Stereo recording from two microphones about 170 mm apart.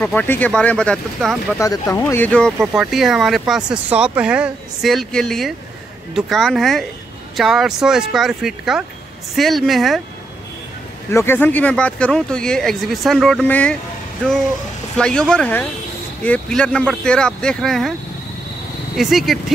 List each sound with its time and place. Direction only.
0.0 s speech: 10° left (ahead or behind)
1.6 s speech: 20° left (ahead or behind)
2.6 s speech: 5° right (ahead or behind)
11.1 s speech: 15° left (ahead or behind)
15.0 s speech: 5° left (ahead or behind)
18.9 s speech: centre (ahead or behind)